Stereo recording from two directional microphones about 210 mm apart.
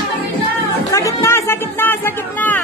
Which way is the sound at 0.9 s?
15° left (ahead or behind).